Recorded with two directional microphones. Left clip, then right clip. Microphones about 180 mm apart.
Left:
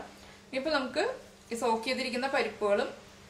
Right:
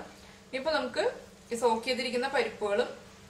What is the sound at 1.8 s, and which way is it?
A woman's voice, 25° left (ahead or behind).